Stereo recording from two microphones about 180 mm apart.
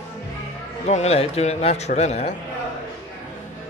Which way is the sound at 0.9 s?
35° left (ahead or behind).